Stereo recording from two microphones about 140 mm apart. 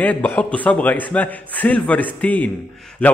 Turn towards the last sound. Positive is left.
turn(degrees=10)  # may be behind; listen again after turning